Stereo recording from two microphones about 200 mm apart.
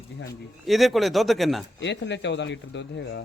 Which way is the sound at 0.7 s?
Centre (ahead or behind).